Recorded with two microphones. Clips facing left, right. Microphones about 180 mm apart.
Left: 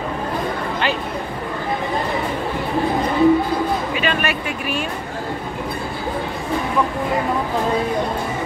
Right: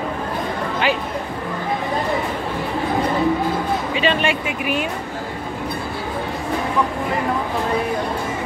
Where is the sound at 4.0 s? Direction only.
25° right (ahead or behind).